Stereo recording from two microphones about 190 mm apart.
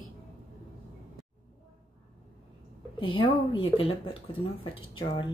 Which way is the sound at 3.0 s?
25° left (ahead or behind).